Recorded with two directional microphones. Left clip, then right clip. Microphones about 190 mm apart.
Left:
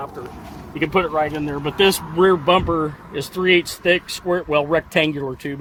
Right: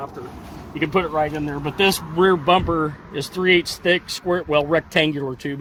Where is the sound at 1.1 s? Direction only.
10° right (ahead or behind).